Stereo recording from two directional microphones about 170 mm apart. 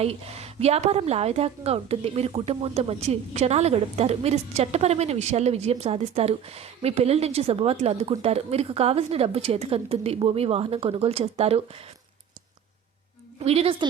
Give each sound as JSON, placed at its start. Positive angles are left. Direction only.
{"t": 0.0, "sound": "a woman's voice", "side_deg": -35}
{"t": 13.4, "sound": "a woman's voice", "side_deg": -35}